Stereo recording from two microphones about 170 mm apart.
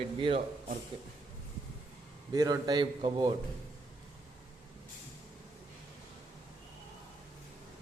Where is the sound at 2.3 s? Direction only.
20° right (ahead or behind).